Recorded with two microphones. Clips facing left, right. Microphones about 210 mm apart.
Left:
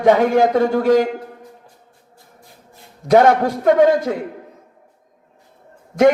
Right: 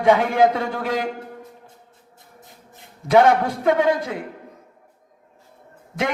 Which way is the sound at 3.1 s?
45° left (ahead or behind).